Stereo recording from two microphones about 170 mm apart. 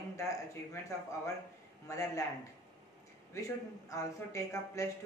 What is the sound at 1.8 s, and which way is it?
Speech, 20° left (ahead or behind).